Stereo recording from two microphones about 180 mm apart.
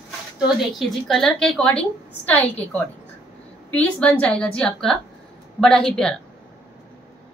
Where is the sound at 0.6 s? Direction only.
Centre (ahead or behind).